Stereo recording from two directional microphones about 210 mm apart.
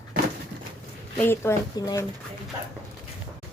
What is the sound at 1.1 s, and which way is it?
Speech, 10° left (ahead or behind).